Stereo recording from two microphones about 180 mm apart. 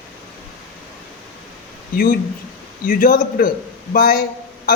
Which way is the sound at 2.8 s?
50° left (ahead or behind).